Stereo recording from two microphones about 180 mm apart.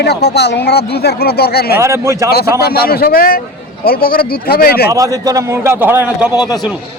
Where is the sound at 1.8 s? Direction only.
15° right (ahead or behind).